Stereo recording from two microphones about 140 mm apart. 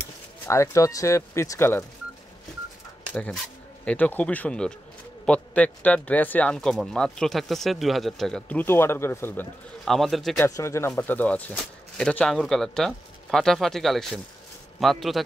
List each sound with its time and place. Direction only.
0.5 s speech: 20° left (ahead or behind)
3.8 s speech: 10° left (ahead or behind)
9.8 s speech: centre (ahead or behind)
10.4 s speech: 20° left (ahead or behind); by 15.2 s centre (ahead or behind)